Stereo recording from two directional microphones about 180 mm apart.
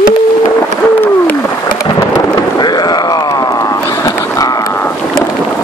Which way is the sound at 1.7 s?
20° left (ahead or behind).